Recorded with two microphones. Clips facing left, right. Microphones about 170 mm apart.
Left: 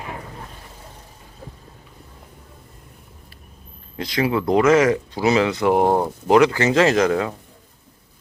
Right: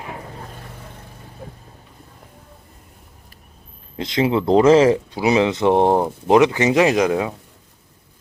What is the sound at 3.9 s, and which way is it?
Speech, 25° right (ahead or behind).